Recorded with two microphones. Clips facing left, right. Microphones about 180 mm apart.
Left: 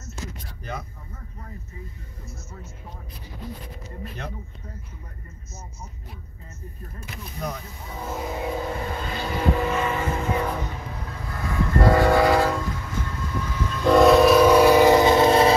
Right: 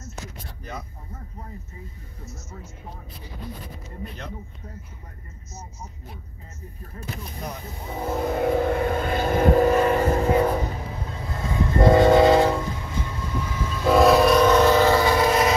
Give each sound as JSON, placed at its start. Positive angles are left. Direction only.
{"t": 8.1, "sound": "vehicle", "side_deg": -60}
{"t": 11.1, "sound": "train", "side_deg": -25}
{"t": 13.5, "sound": "train", "side_deg": -5}